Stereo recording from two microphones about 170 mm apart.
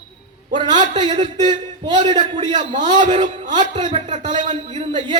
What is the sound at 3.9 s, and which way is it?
Speech, 45° right (ahead or behind).